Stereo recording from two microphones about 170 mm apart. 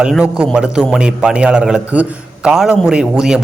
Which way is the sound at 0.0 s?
5° right (ahead or behind).